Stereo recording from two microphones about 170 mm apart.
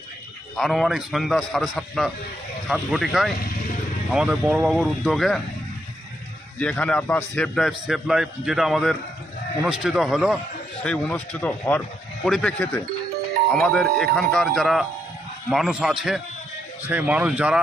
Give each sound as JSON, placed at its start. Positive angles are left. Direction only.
{"t": 0.5, "sound": "a man's voice", "side_deg": 0}
{"t": 6.6, "sound": "a man's voice", "side_deg": 5}